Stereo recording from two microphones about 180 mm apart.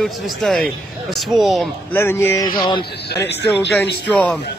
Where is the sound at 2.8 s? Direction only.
75° left (ahead or behind).